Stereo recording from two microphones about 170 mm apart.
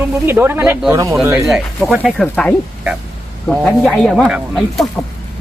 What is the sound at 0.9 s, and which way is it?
Speech, 20° right (ahead or behind).